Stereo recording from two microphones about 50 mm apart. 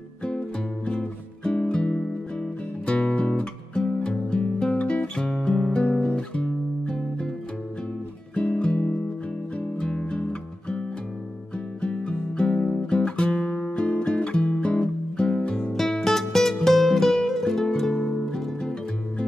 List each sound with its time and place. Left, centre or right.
0.2 s music: centre
2.9 s guitar: left
3.9 s music: centre
5.9 s guitar: left
8.7 s music: left
9.8 s music: centre
11.8 s music: centre
15.7 s music: centre